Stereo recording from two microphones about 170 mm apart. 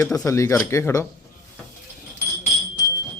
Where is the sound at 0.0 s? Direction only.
20° left (ahead or behind).